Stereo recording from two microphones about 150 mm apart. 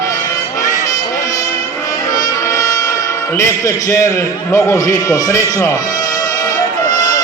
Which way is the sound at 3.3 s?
20° left (ahead or behind).